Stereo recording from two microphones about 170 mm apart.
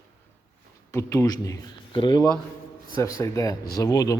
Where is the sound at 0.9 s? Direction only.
20° left (ahead or behind).